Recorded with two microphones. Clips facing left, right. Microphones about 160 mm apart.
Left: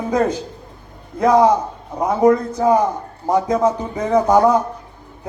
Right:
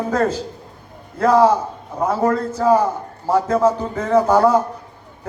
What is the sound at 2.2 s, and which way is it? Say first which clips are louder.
Speech: left 8 dB; 15° left (ahead or behind).